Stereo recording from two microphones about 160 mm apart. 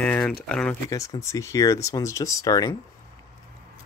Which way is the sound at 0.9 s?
20° left (ahead or behind).